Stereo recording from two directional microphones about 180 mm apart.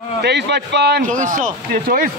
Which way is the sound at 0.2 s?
70° right (ahead or behind).